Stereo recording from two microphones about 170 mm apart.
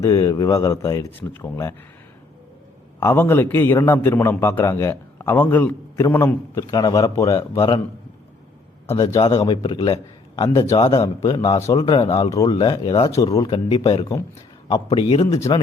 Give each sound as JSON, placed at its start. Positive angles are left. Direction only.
{"t": 0.0, "sound": "speech", "side_deg": 20}
{"t": 3.0, "sound": "a man's voice", "side_deg": 15}
{"t": 9.5, "sound": "a man's voice", "side_deg": 30}
{"t": 15.3, "sound": "speech", "side_deg": 20}